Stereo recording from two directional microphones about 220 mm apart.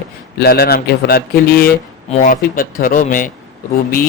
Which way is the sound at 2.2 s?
40° left (ahead or behind).